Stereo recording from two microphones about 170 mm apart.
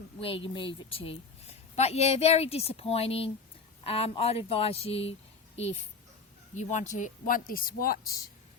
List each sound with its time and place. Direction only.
0.2 s a woman's voice: 30° left (ahead or behind)
6.6 s speech: 45° left (ahead or behind)